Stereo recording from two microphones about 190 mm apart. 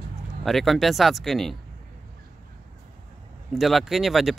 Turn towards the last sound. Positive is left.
turn(degrees=0)  # may be behind; listen again after turning